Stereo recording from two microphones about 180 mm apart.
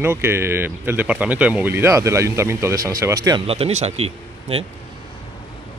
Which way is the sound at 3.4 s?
35° right (ahead or behind).